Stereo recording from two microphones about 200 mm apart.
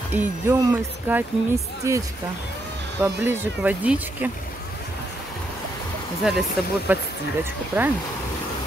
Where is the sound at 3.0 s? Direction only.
10° right (ahead or behind).